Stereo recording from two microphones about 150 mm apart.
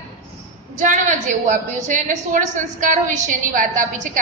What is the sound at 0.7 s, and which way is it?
A woman's voice, 55° right (ahead or behind).